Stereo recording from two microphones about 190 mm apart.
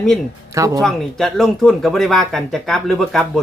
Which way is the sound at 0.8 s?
Centre (ahead or behind).